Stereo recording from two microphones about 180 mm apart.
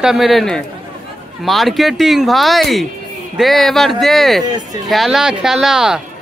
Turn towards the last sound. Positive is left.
turn(degrees=-5)  # may be behind; listen again after turning